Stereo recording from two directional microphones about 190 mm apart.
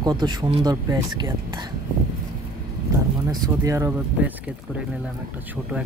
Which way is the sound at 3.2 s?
15° right (ahead or behind).